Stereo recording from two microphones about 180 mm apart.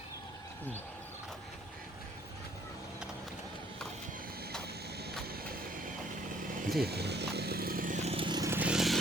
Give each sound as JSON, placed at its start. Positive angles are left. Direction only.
{"t": 6.8, "sound": "vehicle", "side_deg": -65}